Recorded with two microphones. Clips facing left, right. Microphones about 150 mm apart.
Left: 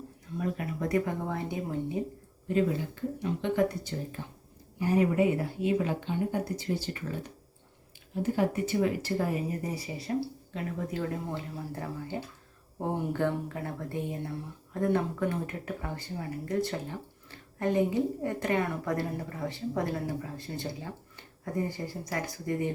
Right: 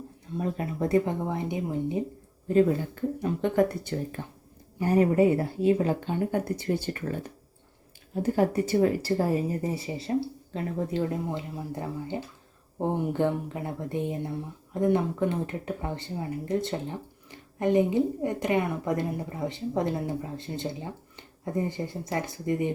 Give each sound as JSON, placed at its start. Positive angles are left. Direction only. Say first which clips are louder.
{"t": 0.3, "sound": "speech", "louder": "right 3 dB", "side_deg": -30}
{"t": 2.5, "sound": "speech", "louder": "right 6 dB", "side_deg": -35}
{"t": 3.2, "sound": "speech", "louder": "right 3 dB", "side_deg": -45}
{"t": 4.2, "sound": "speech", "louder": "right 3 dB", "side_deg": -55}
{"t": 4.8, "sound": "speech", "louder": "right 4 dB", "side_deg": -40}
{"t": 6.6, "sound": "speech", "louder": "right 4 dB", "side_deg": -55}
{"t": 11.1, "sound": "speech", "louder": "right 4 dB", "side_deg": -20}